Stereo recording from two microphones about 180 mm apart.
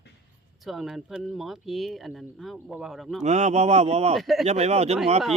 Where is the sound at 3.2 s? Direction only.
40° right (ahead or behind).